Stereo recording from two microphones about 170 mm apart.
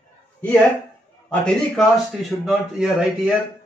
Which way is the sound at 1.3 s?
5° left (ahead or behind).